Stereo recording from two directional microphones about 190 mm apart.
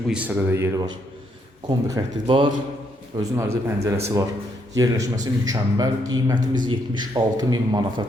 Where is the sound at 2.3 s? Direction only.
25° right (ahead or behind).